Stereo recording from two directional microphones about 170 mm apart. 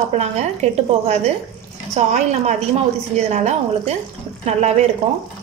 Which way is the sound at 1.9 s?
40° right (ahead or behind).